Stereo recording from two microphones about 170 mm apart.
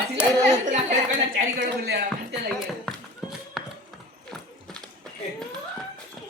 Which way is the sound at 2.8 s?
Centre (ahead or behind).